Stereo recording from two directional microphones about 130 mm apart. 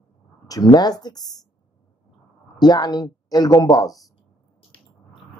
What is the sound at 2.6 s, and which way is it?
Speech, 30° left (ahead or behind).